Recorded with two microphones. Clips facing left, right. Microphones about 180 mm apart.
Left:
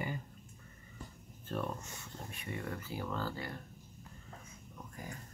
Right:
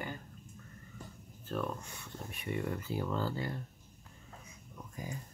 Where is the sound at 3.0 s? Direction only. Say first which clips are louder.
Right 3 dB; 20° right (ahead or behind).